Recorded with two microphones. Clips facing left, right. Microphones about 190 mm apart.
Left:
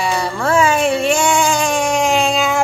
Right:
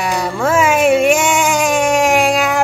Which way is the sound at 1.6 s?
5° right (ahead or behind).